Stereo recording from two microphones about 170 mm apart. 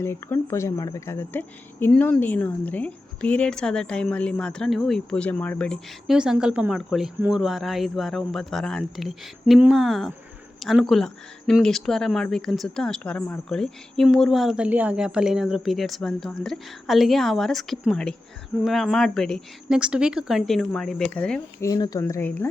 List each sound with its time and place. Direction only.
0.0 s speech: 15° left (ahead or behind)
21.6 s speech: 20° left (ahead or behind)